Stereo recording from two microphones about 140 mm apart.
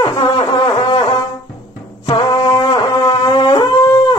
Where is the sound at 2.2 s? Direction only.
25° left (ahead or behind).